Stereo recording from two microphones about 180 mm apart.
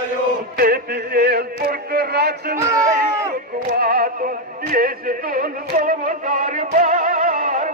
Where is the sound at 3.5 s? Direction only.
55° right (ahead or behind).